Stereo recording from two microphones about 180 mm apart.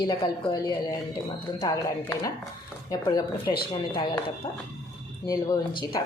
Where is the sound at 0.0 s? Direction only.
25° left (ahead or behind).